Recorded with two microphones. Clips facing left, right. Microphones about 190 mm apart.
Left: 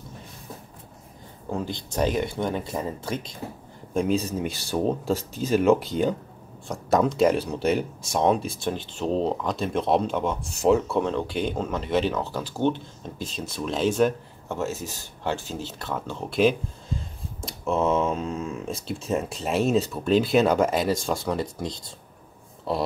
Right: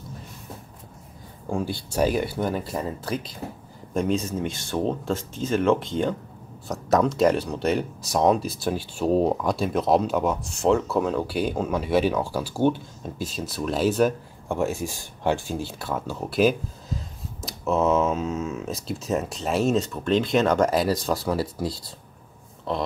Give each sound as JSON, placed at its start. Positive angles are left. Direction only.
{"t": 1.6, "sound": "speech", "side_deg": -10}
{"t": 4.1, "sound": "speech", "side_deg": 35}
{"t": 4.4, "sound": "speech", "side_deg": 10}